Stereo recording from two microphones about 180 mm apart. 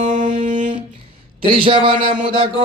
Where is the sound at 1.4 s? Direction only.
30° right (ahead or behind).